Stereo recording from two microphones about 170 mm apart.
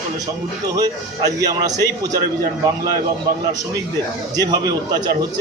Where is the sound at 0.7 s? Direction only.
20° right (ahead or behind).